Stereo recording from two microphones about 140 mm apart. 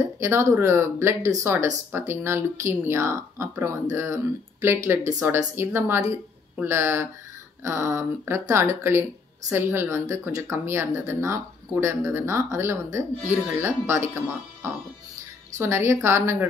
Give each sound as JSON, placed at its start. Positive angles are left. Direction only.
{"t": 0.2, "sound": "speech", "side_deg": -20}